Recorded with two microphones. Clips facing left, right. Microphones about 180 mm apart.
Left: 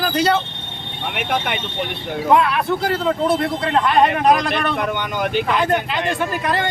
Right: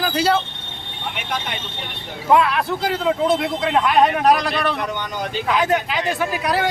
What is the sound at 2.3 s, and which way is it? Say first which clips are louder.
Speech: right 1 dB; centre (ahead or behind).